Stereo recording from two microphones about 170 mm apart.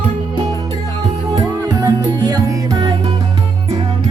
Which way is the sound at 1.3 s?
20° right (ahead or behind).